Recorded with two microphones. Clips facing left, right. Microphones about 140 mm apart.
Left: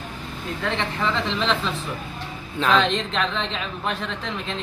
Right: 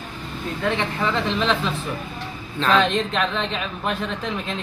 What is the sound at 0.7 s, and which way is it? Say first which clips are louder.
A woman's voice: right 2 dB; 10° right (ahead or behind).